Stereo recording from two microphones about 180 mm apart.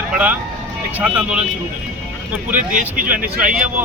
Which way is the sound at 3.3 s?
5° right (ahead or behind).